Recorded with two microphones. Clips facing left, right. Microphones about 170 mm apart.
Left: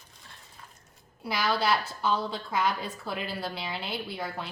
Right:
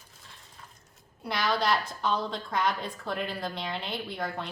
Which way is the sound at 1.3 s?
5° left (ahead or behind).